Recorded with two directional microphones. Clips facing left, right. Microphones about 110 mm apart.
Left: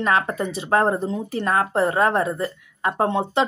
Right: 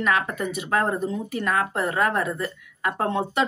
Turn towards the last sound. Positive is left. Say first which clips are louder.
# left 3 dB
turn(degrees=20)  # may be behind; listen again after turning